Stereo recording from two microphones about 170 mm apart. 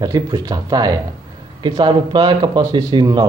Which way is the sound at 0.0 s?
20° right (ahead or behind).